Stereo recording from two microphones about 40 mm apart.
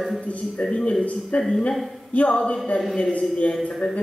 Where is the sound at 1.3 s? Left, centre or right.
Left.